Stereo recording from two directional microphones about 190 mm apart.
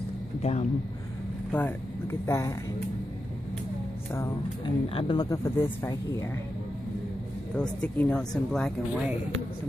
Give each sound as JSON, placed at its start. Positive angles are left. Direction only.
{"t": 0.4, "sound": "speech", "side_deg": 35}
{"t": 1.5, "sound": "speech", "side_deg": 10}
{"t": 4.6, "sound": "speech", "side_deg": 25}
{"t": 7.5, "sound": "speech", "side_deg": 5}